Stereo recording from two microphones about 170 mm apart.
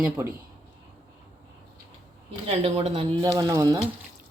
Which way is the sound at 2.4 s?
35° right (ahead or behind).